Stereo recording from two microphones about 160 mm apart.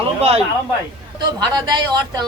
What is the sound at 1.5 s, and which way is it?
Speech, 25° right (ahead or behind).